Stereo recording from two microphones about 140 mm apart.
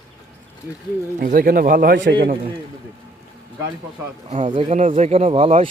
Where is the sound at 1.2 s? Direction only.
90° right.